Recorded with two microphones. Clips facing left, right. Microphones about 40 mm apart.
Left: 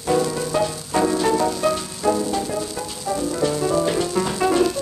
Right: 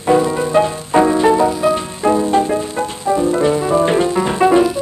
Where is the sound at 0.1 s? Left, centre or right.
Right.